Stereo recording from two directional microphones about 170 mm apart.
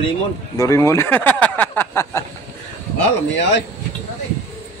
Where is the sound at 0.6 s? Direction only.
20° left (ahead or behind).